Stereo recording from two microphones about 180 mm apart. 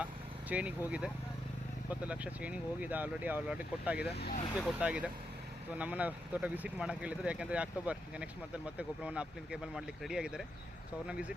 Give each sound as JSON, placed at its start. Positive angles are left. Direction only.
{"t": 0.0, "sound": "vehicle", "side_deg": -5}
{"t": 0.9, "sound": "speech", "side_deg": -5}
{"t": 4.0, "sound": "speech", "side_deg": 65}
{"t": 4.6, "sound": "speech", "side_deg": -5}